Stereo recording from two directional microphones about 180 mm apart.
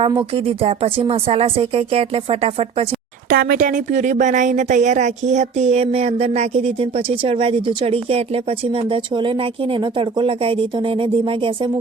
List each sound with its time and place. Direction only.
0.0 s a woman's voice: 30° right (ahead or behind)
3.2 s a woman's voice: 55° right (ahead or behind); by 11.7 s 30° right (ahead or behind)